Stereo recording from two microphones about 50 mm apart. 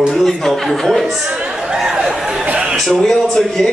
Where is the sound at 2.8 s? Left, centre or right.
Centre.